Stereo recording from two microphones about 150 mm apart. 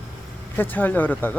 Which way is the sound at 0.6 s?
10° left (ahead or behind).